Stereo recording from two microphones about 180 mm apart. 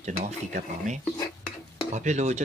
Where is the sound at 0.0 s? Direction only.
40° right (ahead or behind).